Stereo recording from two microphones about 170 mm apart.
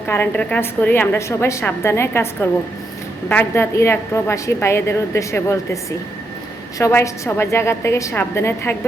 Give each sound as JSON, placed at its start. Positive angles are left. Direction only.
{"t": 0.1, "sound": "a woman's voice", "side_deg": 10}
{"t": 6.7, "sound": "a woman's voice", "side_deg": 20}